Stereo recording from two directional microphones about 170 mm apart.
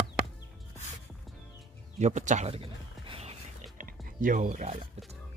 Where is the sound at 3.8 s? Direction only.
55° right (ahead or behind).